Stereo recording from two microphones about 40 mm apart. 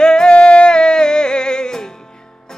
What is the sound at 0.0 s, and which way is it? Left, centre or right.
Music, centre.